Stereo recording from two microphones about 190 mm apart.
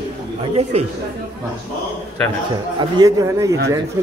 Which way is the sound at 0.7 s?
35° right (ahead or behind).